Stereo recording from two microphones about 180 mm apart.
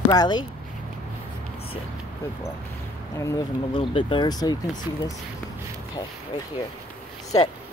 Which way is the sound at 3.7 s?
25° left (ahead or behind).